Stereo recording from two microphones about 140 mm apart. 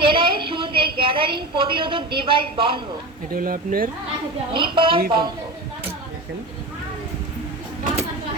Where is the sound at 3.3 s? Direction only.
90° right.